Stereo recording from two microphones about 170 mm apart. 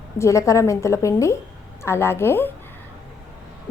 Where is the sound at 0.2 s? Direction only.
15° left (ahead or behind).